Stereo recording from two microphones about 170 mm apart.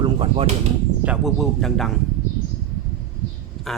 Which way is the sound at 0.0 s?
35° right (ahead or behind).